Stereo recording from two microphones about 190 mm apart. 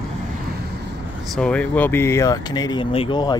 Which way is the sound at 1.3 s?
5° left (ahead or behind).